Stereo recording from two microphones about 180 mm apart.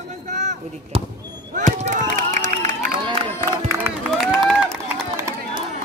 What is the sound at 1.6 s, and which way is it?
Run, 40° right (ahead or behind).